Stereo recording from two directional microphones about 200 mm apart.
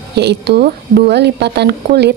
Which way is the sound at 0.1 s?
55° right (ahead or behind).